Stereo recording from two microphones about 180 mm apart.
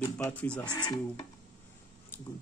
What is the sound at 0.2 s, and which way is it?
Speech, 5° left (ahead or behind).